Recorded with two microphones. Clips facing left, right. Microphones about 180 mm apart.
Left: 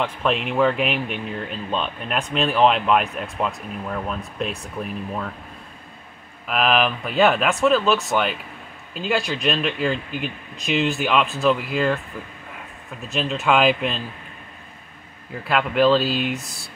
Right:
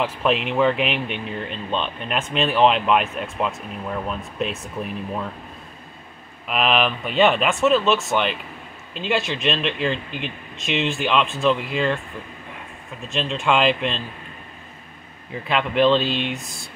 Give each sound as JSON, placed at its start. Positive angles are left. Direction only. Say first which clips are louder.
{"t": 0.0, "sound": "speech", "louder": "right 1 dB", "side_deg": 0}
{"t": 6.4, "sound": "speech", "louder": "left 1 dB", "side_deg": 0}
{"t": 13.1, "sound": "speech", "louder": "left 1 dB", "side_deg": 5}
{"t": 15.4, "sound": "speech", "louder": "even", "side_deg": 5}